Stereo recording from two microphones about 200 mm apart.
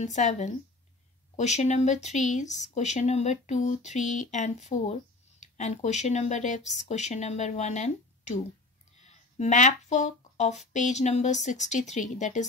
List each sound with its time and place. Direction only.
0.0 s speech: 35° left (ahead or behind)
9.0 s a sound: 35° left (ahead or behind)
10.7 s speech: 35° left (ahead or behind)